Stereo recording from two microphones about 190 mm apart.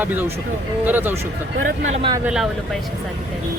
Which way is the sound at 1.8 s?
35° right (ahead or behind).